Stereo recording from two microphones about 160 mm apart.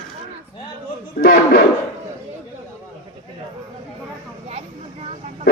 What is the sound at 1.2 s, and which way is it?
Speech, 65° left (ahead or behind).